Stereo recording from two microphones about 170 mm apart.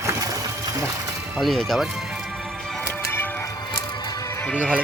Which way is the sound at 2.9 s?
10° left (ahead or behind).